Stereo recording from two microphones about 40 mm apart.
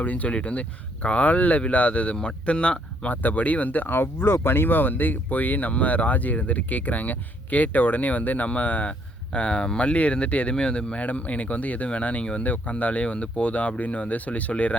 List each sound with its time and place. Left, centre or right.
0.0 s speech: left
3.1 s speech: left
9.3 s speech: left
11.0 s speech: left